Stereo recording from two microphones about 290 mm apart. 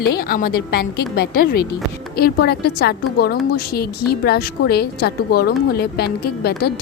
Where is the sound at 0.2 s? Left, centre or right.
Left.